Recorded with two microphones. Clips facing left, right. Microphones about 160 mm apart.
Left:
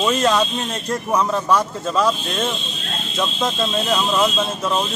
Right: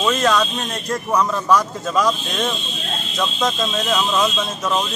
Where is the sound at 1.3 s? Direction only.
30° left (ahead or behind).